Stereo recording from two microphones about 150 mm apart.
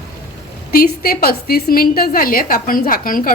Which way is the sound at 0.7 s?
80° left.